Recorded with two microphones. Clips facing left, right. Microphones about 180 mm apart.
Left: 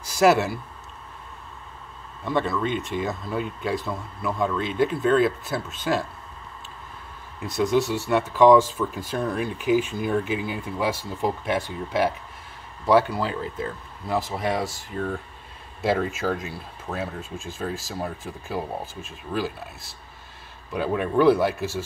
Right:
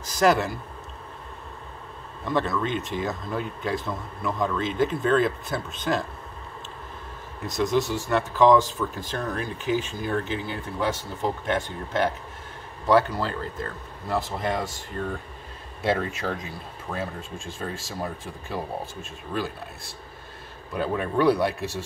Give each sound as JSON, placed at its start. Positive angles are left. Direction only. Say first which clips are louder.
{"t": 0.0, "sound": "speech", "louder": "left 2 dB", "side_deg": 10}
{"t": 2.2, "sound": "speech", "louder": "left 1 dB", "side_deg": 5}
{"t": 7.6, "sound": "speech", "louder": "left 2 dB", "side_deg": 5}